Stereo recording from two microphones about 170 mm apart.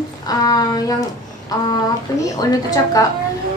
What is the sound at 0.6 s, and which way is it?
Speech, 20° left (ahead or behind).